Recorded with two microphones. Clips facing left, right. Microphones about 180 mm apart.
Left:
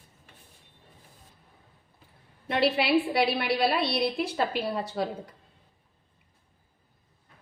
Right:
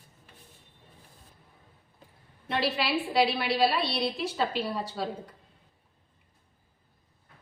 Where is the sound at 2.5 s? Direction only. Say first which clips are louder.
Left 5 dB; 60° left (ahead or behind).